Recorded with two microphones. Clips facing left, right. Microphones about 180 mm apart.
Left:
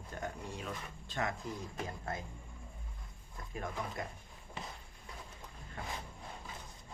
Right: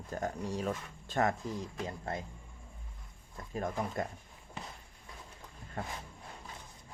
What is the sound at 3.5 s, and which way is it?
Speech, 40° right (ahead or behind).